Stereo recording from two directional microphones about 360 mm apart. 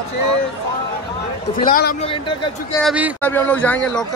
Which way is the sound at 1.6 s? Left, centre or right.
Left.